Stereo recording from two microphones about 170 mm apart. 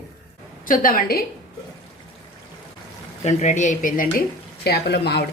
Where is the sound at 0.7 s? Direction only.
55° left (ahead or behind).